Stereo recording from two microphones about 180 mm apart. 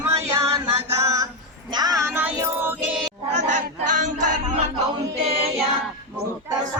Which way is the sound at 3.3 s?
40° right (ahead or behind).